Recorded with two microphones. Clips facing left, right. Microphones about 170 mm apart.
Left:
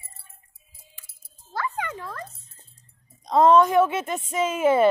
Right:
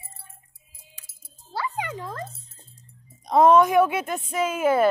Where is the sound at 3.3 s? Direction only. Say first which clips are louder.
Even; 15° right (ahead or behind).